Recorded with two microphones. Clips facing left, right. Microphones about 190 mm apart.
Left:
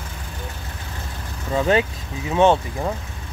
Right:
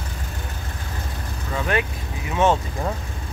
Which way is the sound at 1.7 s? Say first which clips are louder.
Left 3 dB; 25° left (ahead or behind).